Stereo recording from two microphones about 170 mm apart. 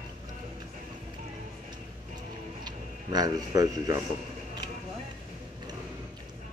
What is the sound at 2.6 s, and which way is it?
Speech, 25° right (ahead or behind).